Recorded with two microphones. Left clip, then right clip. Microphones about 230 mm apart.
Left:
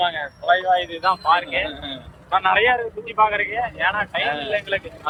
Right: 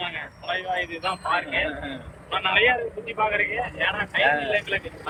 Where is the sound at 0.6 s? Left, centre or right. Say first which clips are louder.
Left 8 dB; left.